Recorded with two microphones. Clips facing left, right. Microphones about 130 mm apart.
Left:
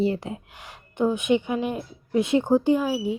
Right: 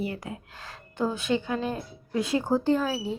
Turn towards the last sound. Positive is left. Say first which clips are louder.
# left 3 dB
turn(degrees=15)  # may be behind; listen again after turning